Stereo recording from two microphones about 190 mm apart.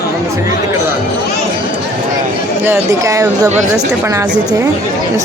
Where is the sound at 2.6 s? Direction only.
15° right (ahead or behind).